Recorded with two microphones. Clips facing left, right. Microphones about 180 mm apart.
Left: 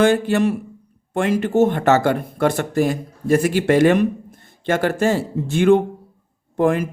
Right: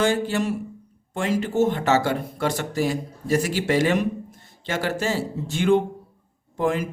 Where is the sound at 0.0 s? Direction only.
60° left (ahead or behind).